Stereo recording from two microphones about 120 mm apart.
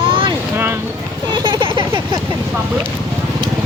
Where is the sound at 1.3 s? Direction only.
45° right (ahead or behind).